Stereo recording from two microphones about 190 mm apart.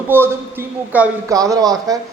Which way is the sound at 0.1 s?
10° right (ahead or behind).